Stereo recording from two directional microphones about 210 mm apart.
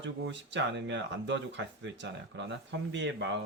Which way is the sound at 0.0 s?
60° right (ahead or behind).